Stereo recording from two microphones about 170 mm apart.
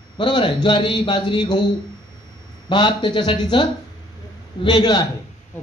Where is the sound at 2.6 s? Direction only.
25° left (ahead or behind).